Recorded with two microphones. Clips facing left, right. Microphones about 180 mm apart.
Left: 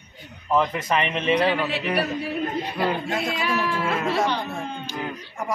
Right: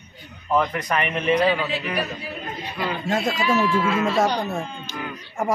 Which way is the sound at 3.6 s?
60° left (ahead or behind).